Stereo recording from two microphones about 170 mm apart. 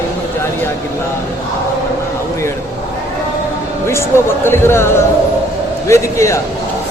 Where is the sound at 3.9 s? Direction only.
15° left (ahead or behind).